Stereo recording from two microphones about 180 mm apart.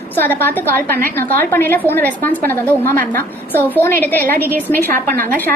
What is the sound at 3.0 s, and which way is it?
Speech, 50° right (ahead or behind).